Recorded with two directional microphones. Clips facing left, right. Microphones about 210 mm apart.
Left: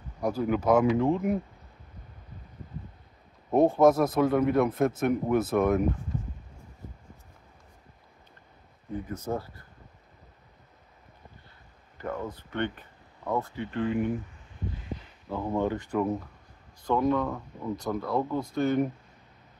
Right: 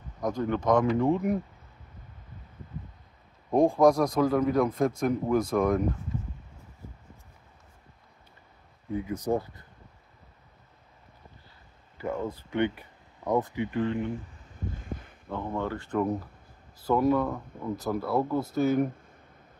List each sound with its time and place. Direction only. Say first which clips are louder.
0.2 s speech: left 1 dB; 5° left (ahead or behind)
3.4 s speech: even; 5° left (ahead or behind)
9.0 s speech: right 5 dB; 15° right (ahead or behind)
12.0 s speech: right 2 dB; 10° right (ahead or behind)
14.9 s a sound: even; 50° right (ahead or behind)
15.2 s speech: left 2 dB; 5° left (ahead or behind)
15.5 s speech: left 4 dB; 15° left (ahead or behind)
16.8 s speech: right 1 dB; 5° right (ahead or behind)